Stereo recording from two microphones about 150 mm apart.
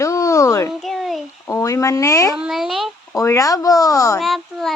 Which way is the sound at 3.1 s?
20° left (ahead or behind).